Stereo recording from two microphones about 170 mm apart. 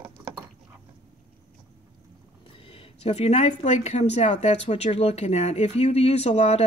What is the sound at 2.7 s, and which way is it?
Speech, 35° left (ahead or behind).